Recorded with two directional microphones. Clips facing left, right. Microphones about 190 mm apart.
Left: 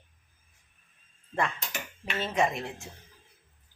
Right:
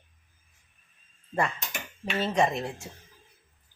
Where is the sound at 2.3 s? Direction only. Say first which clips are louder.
Right 2 dB; 5° left (ahead or behind).